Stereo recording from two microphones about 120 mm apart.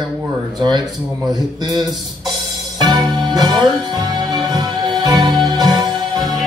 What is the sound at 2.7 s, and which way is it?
Music, 35° right (ahead or behind).